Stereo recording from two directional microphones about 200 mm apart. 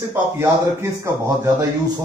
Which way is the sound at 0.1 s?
15° right (ahead or behind).